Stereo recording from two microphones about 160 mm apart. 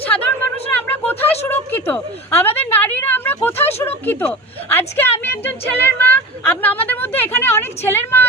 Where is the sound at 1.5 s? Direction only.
10° left (ahead or behind).